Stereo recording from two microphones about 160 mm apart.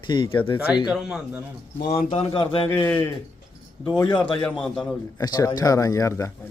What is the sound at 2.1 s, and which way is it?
Speech, 35° left (ahead or behind).